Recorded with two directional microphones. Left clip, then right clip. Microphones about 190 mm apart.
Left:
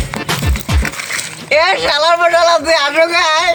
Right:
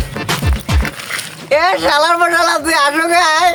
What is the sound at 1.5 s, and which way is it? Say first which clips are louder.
A man's voice: even; 15° right (ahead or behind).